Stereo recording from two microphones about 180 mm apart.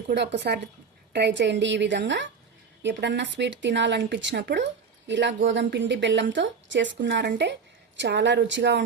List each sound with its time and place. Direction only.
0.1 s speech: 75° right (ahead or behind)